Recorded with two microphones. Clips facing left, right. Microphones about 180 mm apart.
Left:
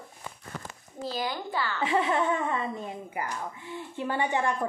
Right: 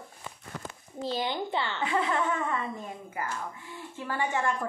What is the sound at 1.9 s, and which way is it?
Speech, 20° left (ahead or behind).